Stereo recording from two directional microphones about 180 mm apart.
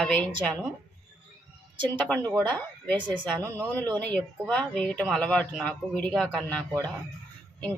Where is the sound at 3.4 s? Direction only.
15° right (ahead or behind).